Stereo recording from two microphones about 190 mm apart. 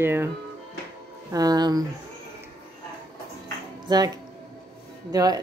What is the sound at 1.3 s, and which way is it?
Speech, 20° right (ahead or behind).